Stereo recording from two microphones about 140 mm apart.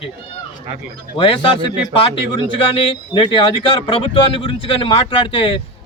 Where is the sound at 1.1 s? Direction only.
35° left (ahead or behind).